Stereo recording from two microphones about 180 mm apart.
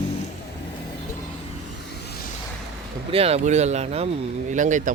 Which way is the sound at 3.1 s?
35° right (ahead or behind).